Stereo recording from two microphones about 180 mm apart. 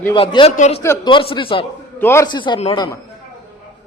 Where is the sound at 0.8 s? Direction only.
15° left (ahead or behind).